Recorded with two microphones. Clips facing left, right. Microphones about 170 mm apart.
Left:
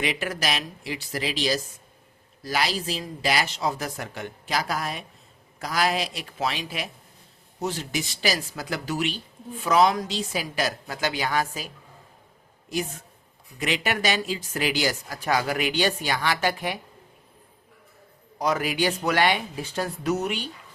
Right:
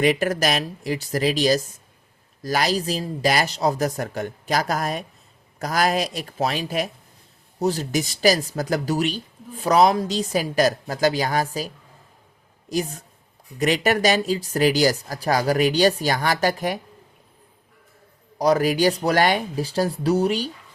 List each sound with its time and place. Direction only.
0.0 s a man's voice: 45° right (ahead or behind)
18.3 s speech: 35° right (ahead or behind)